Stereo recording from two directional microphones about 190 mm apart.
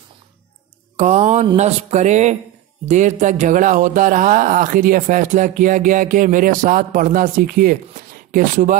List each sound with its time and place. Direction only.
0.9 s speech: 35° right (ahead or behind)